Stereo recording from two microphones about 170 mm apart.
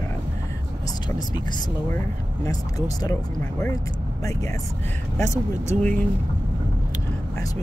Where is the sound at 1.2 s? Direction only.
25° left (ahead or behind).